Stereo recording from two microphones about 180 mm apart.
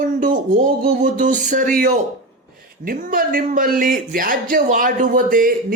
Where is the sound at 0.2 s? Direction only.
45° right (ahead or behind).